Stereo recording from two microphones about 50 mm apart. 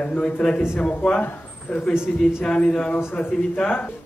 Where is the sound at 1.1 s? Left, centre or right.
Left.